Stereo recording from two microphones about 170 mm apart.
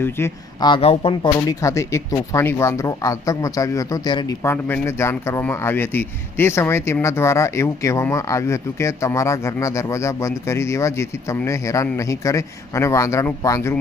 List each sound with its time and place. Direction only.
0.2 s a man's voice: 15° left (ahead or behind)
0.6 s speech: 30° left (ahead or behind)
1.4 s speech: 20° left (ahead or behind)
4.4 s a man's voice: 15° left (ahead or behind)